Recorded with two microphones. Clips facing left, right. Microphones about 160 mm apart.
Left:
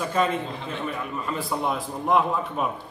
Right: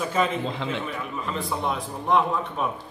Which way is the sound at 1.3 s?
5° left (ahead or behind).